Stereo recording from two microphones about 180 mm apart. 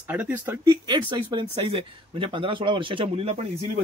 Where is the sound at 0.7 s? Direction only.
25° right (ahead or behind).